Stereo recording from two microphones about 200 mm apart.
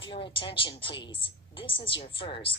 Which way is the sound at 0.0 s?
25° left (ahead or behind).